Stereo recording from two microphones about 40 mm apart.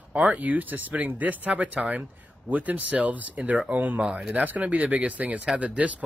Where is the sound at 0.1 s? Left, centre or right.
Right.